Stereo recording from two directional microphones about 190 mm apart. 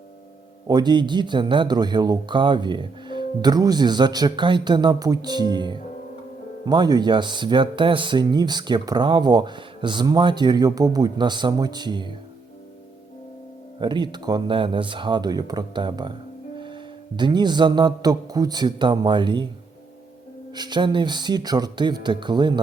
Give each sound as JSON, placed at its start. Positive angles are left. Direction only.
{"t": 0.7, "sound": "speech", "side_deg": -20}
{"t": 13.7, "sound": "speech", "side_deg": -25}
{"t": 20.5, "sound": "speech", "side_deg": -20}